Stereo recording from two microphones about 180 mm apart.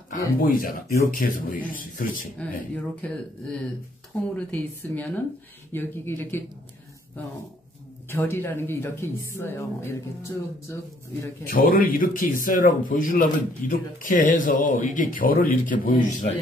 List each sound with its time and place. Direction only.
0.4 s speech: 50° left (ahead or behind)
2.3 s speech: 10° left (ahead or behind)
8.1 s speech: 15° left (ahead or behind)
11.4 s speech: 55° left (ahead or behind)